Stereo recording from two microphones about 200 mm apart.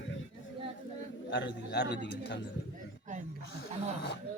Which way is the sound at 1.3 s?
60° left (ahead or behind).